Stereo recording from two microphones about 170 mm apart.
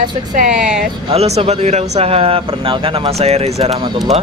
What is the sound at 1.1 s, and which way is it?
Speech, 35° right (ahead or behind).